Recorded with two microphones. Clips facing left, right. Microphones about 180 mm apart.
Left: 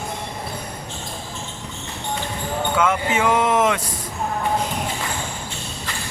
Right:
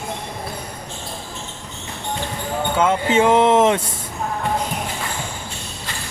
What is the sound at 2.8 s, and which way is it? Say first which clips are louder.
Speech: right 4 dB; 30° right (ahead or behind).